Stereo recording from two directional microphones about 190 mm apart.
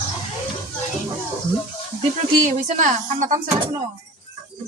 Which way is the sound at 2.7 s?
40° right (ahead or behind).